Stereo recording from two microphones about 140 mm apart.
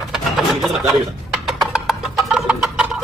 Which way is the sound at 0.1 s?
Centre (ahead or behind).